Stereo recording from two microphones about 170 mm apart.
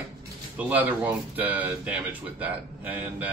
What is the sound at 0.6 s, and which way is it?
Speech, 10° right (ahead or behind).